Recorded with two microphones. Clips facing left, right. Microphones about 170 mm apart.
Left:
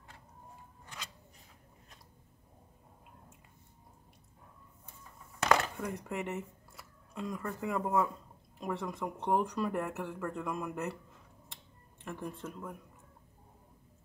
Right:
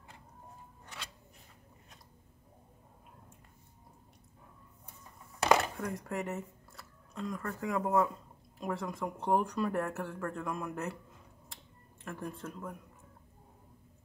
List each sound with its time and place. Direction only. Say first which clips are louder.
5.8 s speech: right 1 dB; centre (ahead or behind)
12.0 s speech: even; centre (ahead or behind)